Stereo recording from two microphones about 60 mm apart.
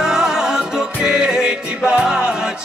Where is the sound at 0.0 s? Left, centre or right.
Centre.